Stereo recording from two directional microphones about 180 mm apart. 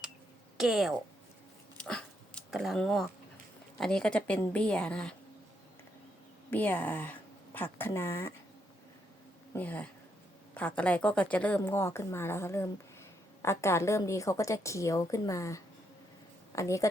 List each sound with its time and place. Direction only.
0.5 s speech: centre (ahead or behind)
1.8 s a sound: 5° left (ahead or behind)
3.8 s a woman's voice: 5° left (ahead or behind)
6.5 s a woman's voice: 10° left (ahead or behind)
9.5 s a woman's voice: 10° left (ahead or behind)